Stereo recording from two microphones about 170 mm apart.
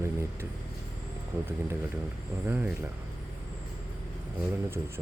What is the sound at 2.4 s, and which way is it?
Speech, 10° right (ahead or behind).